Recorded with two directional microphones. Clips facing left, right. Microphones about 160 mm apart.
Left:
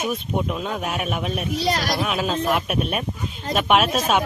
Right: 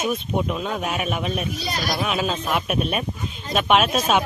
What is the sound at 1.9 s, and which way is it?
Speech, centre (ahead or behind).